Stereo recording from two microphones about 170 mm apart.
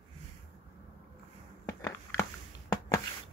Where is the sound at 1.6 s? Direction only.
15° left (ahead or behind).